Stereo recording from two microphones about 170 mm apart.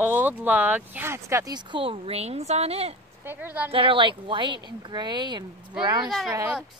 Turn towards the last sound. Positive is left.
turn(degrees=-15)  # may be behind; listen again after turning